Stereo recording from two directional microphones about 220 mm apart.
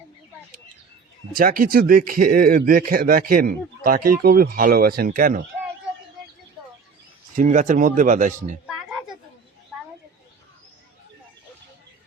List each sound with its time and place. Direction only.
1.4 s speech: 40° right (ahead or behind)
7.3 s speech: 35° right (ahead or behind)
8.6 s a sound: centre (ahead or behind)